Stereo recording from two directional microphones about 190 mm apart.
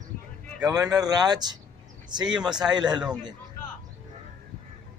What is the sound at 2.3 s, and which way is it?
Speech, 5° right (ahead or behind).